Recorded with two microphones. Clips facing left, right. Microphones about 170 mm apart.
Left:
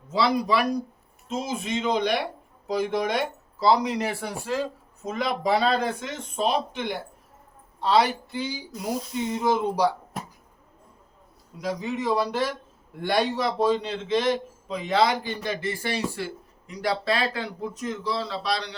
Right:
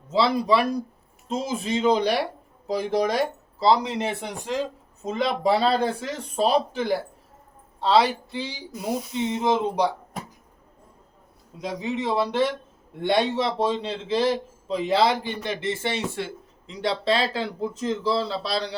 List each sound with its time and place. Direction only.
0.1 s a man's voice: 25° right (ahead or behind)
5.0 s a man's voice: 30° right (ahead or behind)
11.6 s a man's voice: 25° right (ahead or behind)